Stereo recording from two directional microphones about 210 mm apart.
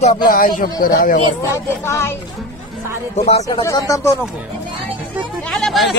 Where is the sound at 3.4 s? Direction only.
15° left (ahead or behind).